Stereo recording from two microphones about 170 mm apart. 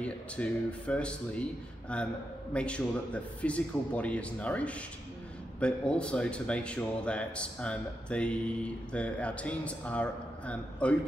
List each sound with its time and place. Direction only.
0.0 s speech: 5° left (ahead or behind)